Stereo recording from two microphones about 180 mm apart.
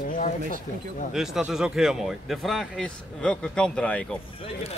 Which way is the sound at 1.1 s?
5° right (ahead or behind).